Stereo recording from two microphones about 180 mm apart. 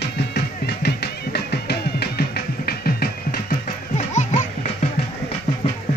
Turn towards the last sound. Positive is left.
turn(degrees=40)  # may be behind; listen again after turning